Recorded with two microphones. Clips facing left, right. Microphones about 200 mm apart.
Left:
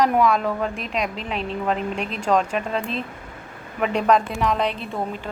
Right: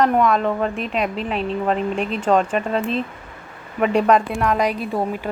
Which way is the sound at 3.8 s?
5° right (ahead or behind).